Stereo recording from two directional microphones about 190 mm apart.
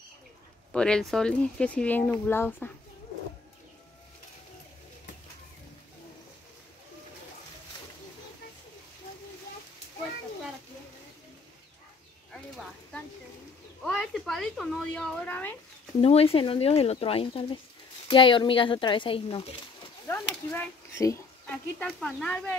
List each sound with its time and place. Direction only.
0.7 s speech: 5° left (ahead or behind)
12.3 s a sound: 5° left (ahead or behind)
16.0 s speech: 30° left (ahead or behind)
20.1 s speech: 15° left (ahead or behind)